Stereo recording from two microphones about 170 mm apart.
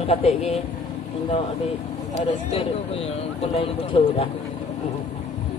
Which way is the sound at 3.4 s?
35° left (ahead or behind).